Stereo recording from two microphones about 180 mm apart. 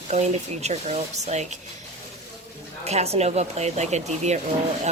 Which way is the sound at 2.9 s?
35° right (ahead or behind).